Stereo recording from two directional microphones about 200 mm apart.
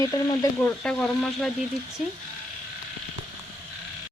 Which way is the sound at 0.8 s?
5° left (ahead or behind).